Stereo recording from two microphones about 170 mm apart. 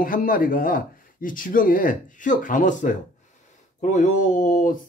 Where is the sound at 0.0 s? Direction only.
55° left (ahead or behind).